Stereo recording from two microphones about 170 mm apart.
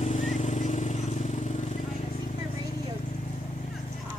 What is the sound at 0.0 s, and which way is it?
Vehicle, 40° left (ahead or behind).